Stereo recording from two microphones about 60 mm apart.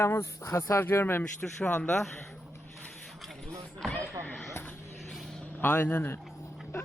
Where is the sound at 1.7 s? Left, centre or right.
Centre.